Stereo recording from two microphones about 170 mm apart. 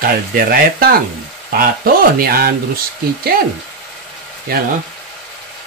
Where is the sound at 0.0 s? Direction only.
55° right (ahead or behind).